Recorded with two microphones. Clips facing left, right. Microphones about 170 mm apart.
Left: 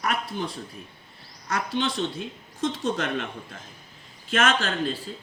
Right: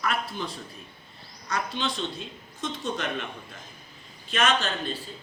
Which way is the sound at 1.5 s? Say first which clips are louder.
Left 3 dB; 55° left (ahead or behind).